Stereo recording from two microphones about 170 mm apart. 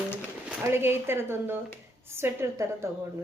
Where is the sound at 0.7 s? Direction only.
15° right (ahead or behind).